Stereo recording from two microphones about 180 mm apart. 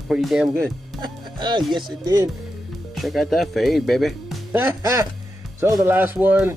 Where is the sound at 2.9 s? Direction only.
Centre (ahead or behind).